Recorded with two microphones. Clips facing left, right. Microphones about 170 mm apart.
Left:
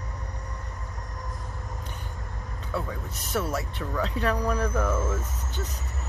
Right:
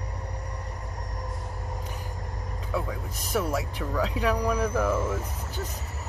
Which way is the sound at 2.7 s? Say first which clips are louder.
Right 1 dB; centre (ahead or behind).